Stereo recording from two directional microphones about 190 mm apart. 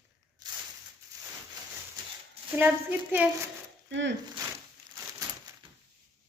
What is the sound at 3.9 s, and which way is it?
Speech, 70° right (ahead or behind).